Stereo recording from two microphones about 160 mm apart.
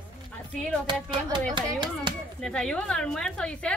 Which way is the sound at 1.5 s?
30° right (ahead or behind).